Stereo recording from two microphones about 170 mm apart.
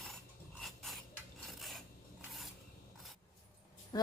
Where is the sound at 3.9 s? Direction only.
25° left (ahead or behind).